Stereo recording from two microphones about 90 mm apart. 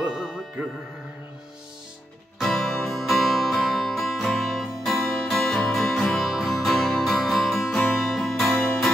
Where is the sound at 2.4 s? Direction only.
Centre (ahead or behind).